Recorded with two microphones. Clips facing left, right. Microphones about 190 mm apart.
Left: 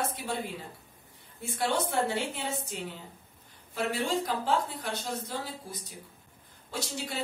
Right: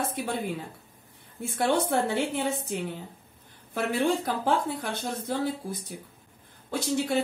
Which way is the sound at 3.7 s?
55° right (ahead or behind).